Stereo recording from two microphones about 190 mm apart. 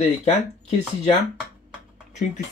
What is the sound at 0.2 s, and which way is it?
Speech, 35° left (ahead or behind).